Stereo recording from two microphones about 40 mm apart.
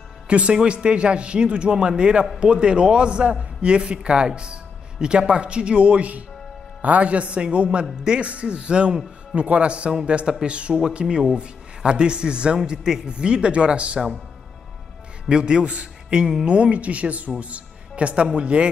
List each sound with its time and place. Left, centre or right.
0.3 s a man's voice: right
15.2 s a man's voice: right